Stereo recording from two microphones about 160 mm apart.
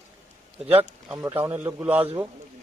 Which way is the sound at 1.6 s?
10° right (ahead or behind).